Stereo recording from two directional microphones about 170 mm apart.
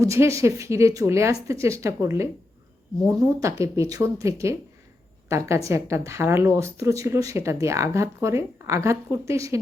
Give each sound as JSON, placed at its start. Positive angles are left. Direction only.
{"t": 0.0, "sound": "speech", "side_deg": -15}
{"t": 3.4, "sound": "speech", "side_deg": -20}